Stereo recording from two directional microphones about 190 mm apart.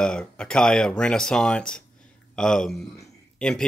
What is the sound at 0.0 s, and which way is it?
Speech, 5° left (ahead or behind).